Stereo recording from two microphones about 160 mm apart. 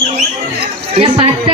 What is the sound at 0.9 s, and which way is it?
Speech, 40° right (ahead or behind).